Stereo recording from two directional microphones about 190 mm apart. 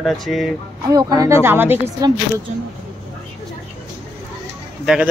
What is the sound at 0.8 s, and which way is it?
Speech, 20° right (ahead or behind).